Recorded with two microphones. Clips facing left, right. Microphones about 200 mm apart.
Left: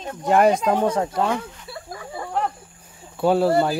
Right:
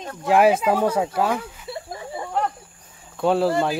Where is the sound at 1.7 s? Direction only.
25° right (ahead or behind).